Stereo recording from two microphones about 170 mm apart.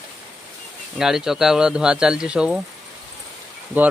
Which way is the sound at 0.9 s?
5° right (ahead or behind).